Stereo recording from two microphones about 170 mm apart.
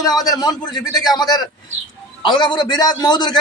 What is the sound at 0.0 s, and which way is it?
A man's voice, 20° left (ahead or behind).